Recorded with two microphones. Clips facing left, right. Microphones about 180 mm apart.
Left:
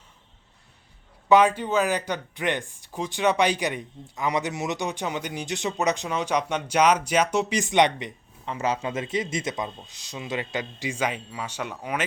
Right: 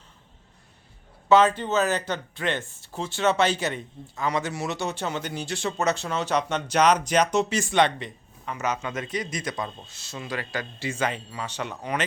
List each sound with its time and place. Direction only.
1.3 s speech: 15° left (ahead or behind)
8.5 s a man's voice: 30° left (ahead or behind); by 12.0 s 10° left (ahead or behind)